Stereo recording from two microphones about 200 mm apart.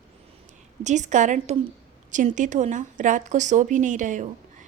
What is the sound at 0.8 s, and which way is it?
A woman's voice, 35° right (ahead or behind).